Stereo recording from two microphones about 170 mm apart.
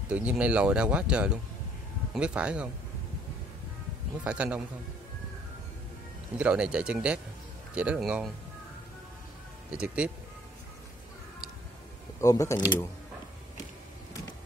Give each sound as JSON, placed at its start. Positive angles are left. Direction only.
{"t": 0.1, "sound": "speech", "side_deg": -10}
{"t": 4.2, "sound": "speech", "side_deg": -10}
{"t": 6.3, "sound": "speech", "side_deg": -5}
{"t": 9.7, "sound": "speech", "side_deg": -5}
{"t": 12.2, "sound": "speech", "side_deg": 20}